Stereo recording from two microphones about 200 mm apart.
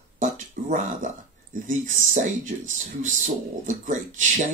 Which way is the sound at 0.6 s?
40° right (ahead or behind).